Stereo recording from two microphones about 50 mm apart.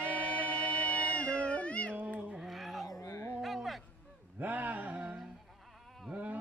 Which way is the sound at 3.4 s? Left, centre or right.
Centre.